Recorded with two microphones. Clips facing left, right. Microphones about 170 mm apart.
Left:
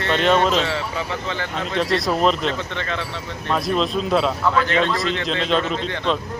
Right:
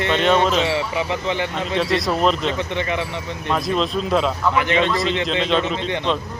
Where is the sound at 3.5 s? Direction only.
Centre (ahead or behind).